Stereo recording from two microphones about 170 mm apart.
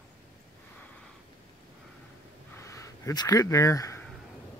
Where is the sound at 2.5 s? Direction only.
15° left (ahead or behind).